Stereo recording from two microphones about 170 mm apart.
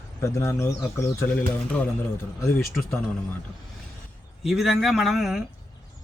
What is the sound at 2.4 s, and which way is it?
Speech, 15° left (ahead or behind).